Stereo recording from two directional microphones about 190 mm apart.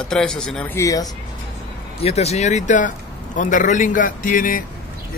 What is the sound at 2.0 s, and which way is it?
A man's voice, 35° left (ahead or behind).